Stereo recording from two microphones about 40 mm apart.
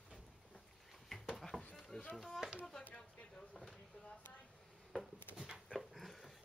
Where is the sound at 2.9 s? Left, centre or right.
Left.